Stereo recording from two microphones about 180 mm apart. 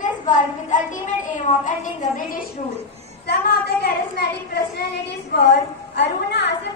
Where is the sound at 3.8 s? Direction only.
60° left (ahead or behind).